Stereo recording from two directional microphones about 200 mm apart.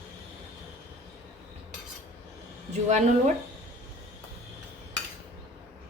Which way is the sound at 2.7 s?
35° right (ahead or behind).